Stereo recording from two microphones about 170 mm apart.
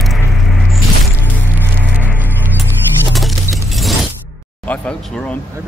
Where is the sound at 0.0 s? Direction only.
Centre (ahead or behind).